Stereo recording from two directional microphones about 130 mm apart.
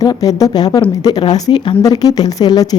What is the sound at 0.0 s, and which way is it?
Speech, 30° left (ahead or behind).